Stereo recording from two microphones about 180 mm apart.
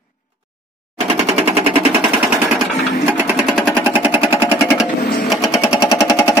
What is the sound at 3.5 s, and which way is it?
Sewing machine, 5° left (ahead or behind).